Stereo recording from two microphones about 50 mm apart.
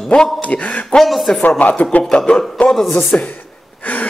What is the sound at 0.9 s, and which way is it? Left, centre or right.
Speech, centre.